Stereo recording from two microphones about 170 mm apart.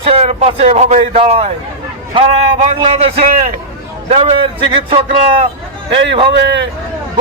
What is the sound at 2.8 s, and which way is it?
A man's voice, 35° right (ahead or behind).